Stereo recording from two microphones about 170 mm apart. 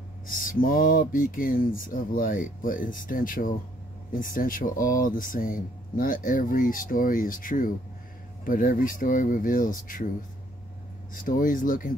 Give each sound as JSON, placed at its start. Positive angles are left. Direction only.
{"t": 0.3, "sound": "speech", "side_deg": 55}
{"t": 11.1, "sound": "speech", "side_deg": 55}